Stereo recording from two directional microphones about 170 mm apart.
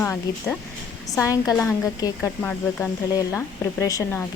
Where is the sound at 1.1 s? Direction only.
20° left (ahead or behind).